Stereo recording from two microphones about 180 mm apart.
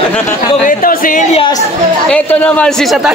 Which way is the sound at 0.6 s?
50° left (ahead or behind).